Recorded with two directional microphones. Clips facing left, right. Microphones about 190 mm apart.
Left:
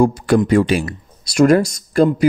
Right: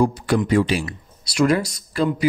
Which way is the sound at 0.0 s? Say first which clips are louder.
Left 5 dB; 50° left (ahead or behind).